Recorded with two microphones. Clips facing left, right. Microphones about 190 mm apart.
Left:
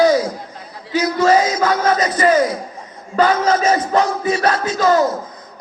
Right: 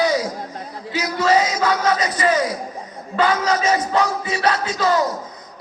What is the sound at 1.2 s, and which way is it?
Music, 45° left (ahead or behind).